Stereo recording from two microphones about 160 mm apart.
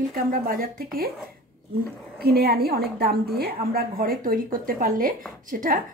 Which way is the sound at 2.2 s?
80° right.